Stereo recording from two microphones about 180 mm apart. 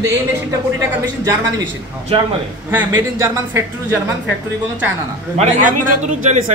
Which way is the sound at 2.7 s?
15° right (ahead or behind).